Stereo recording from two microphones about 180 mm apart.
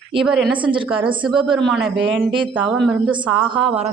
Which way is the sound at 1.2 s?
Centre (ahead or behind).